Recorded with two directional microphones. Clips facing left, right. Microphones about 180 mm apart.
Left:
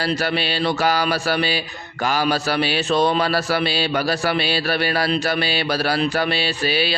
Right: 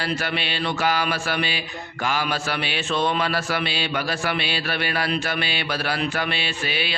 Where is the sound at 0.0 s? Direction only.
35° left (ahead or behind).